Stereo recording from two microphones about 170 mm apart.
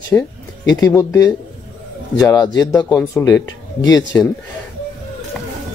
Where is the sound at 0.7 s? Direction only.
20° left (ahead or behind).